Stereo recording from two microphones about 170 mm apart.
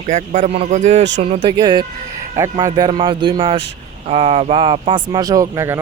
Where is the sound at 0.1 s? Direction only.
45° right (ahead or behind).